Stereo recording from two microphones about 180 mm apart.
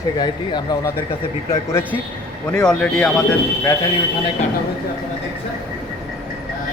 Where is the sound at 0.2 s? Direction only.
25° left (ahead or behind).